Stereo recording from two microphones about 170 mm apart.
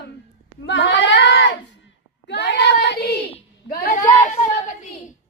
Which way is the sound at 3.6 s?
55° left (ahead or behind).